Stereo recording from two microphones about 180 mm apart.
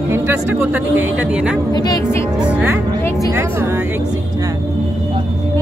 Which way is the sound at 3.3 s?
15° right (ahead or behind).